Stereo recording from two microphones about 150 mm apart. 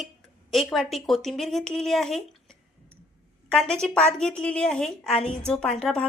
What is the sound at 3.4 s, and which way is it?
A woman's voice, 5° left (ahead or behind).